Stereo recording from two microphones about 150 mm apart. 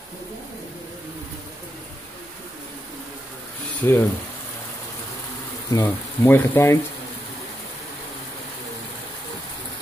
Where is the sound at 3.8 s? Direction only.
15° left (ahead or behind).